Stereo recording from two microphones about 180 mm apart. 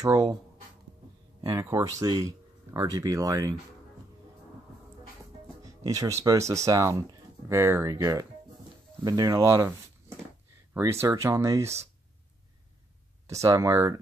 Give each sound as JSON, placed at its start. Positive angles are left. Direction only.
{"t": 0.0, "sound": "speech", "side_deg": -20}
{"t": 1.4, "sound": "speech", "side_deg": -15}
{"t": 5.6, "sound": "speech", "side_deg": -20}
{"t": 13.3, "sound": "speech", "side_deg": -15}